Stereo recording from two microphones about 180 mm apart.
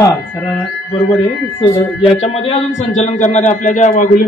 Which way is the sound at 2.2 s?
35° left (ahead or behind).